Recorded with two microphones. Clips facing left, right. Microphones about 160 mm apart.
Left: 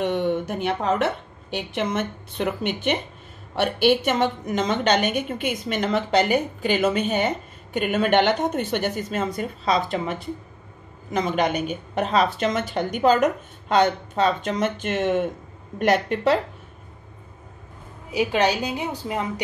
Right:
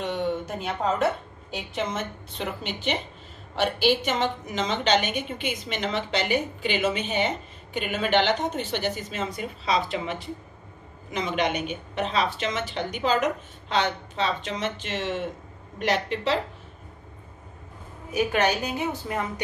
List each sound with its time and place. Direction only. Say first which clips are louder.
0.0 s a woman's voice: left 5 dB; 60° left (ahead or behind)
18.1 s a woman's voice: left 2 dB; 15° left (ahead or behind)